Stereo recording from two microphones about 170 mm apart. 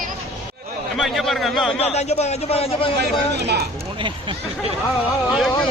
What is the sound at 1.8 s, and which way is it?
A man's voice, 40° left (ahead or behind).